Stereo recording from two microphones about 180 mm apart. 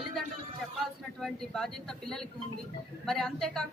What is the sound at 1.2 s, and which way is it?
A woman's voice, 5° left (ahead or behind).